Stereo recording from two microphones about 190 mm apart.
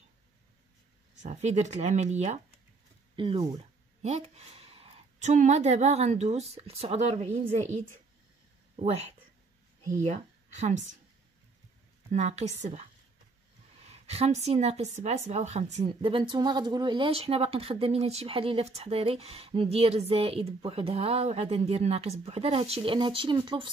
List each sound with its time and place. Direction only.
1.2 s speech: 40° right (ahead or behind)
3.2 s speech: 25° right (ahead or behind)
4.0 s speech: 35° right (ahead or behind)
10.0 s speech: 40° right (ahead or behind)
12.1 s speech: 35° right (ahead or behind)
13.8 s speech: 35° right (ahead or behind)